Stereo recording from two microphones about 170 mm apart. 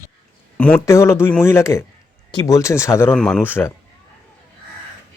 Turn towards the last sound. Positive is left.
turn(degrees=15)  # may be behind; listen again after turning